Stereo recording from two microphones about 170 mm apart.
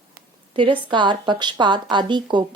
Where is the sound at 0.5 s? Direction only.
30° right (ahead or behind).